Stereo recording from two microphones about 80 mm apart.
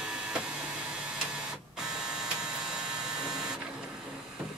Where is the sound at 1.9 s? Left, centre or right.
Centre.